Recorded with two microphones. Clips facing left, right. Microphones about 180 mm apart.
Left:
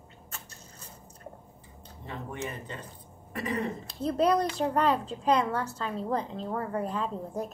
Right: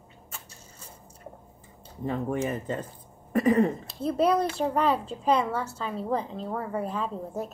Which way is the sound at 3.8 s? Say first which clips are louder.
Right 1 dB; 5° right (ahead or behind).